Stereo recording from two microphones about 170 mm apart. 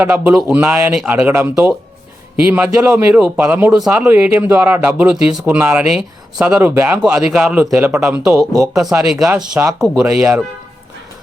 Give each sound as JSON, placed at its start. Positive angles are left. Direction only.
{"t": 0.0, "sound": "a man's voice", "side_deg": -10}
{"t": 8.7, "sound": "a man's voice", "side_deg": -5}